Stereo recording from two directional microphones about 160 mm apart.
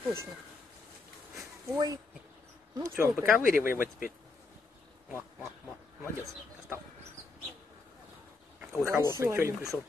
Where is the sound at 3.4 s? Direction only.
60° left (ahead or behind).